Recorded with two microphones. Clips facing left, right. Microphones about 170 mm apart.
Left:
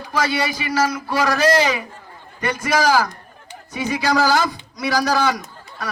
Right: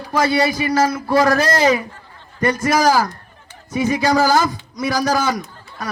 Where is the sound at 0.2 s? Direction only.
45° right (ahead or behind).